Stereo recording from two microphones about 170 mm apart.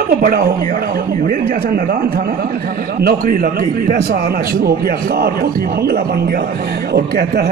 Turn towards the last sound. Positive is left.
turn(degrees=-65)  # may be behind; listen again after turning